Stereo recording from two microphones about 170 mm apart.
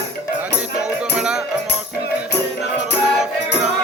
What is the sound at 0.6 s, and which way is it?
Music, 5° right (ahead or behind).